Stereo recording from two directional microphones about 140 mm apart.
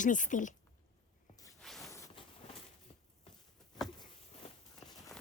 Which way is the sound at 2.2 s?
35° left (ahead or behind).